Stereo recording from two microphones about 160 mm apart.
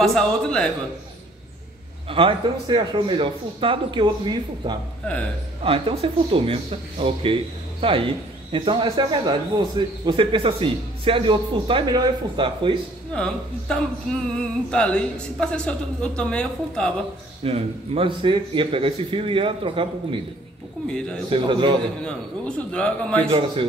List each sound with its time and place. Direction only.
0.0 s speech: 5° left (ahead or behind)
2.0 s speech: 35° right (ahead or behind)
13.1 s speech: 5° left (ahead or behind)
17.4 s speech: 35° right (ahead or behind)
20.8 s speech: 5° left (ahead or behind)
21.3 s speech: 30° right (ahead or behind)
22.0 s a man's voice: 5° left (ahead or behind)
23.3 s speech: 30° right (ahead or behind)